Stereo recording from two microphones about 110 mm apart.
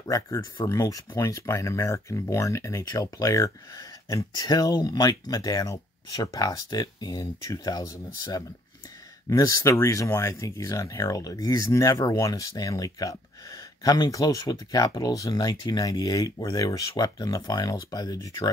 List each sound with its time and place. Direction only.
0.1 s speech: 35° left (ahead or behind)